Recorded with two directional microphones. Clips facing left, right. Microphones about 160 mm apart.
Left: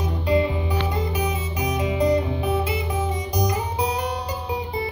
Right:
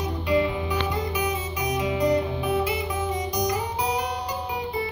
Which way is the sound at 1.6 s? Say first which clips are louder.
Left 2 dB; 25° left (ahead or behind).